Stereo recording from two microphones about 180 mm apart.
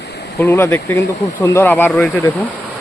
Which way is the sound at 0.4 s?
10° left (ahead or behind).